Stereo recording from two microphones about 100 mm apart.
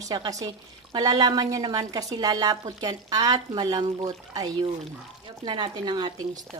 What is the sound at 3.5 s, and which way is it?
A woman's voice, 50° right (ahead or behind).